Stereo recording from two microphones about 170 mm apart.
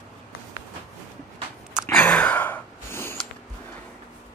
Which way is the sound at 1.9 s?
5° left (ahead or behind).